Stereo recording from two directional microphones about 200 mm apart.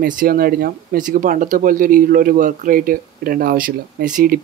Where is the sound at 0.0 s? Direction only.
45° right (ahead or behind).